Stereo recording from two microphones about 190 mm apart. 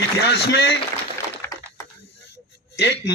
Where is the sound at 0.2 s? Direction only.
60° left (ahead or behind).